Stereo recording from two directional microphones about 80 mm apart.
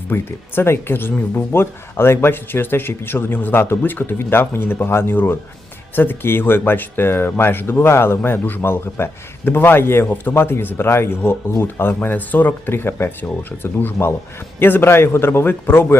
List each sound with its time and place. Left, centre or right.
0.1 s speech: left